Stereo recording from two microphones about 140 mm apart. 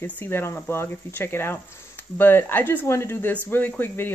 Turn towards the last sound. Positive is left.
turn(degrees=15)  # may be behind; listen again after turning